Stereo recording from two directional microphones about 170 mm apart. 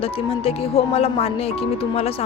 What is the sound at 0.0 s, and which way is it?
Speech, 35° left (ahead or behind).